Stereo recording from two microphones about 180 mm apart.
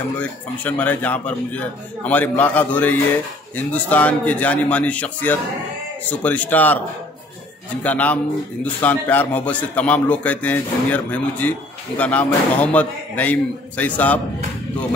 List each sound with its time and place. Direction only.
0.2 s a man's voice: 10° left (ahead or behind)
7.8 s a man's voice: 10° left (ahead or behind)